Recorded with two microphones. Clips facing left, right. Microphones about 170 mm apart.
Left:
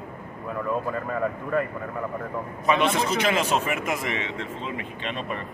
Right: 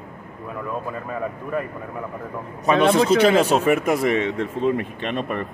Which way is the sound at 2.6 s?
35° right (ahead or behind).